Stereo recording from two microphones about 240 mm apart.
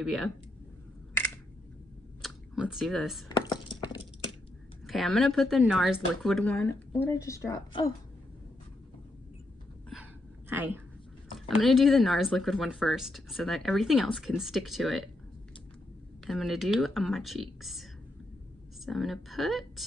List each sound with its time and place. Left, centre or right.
0.0 s speech: centre
2.2 s speech: centre
3.3 s a sound: centre
4.8 s speech: centre
10.5 s speech: centre
16.3 s speech: centre
18.9 s speech: centre